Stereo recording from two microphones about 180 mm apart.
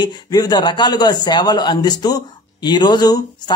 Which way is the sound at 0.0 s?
20° left (ahead or behind).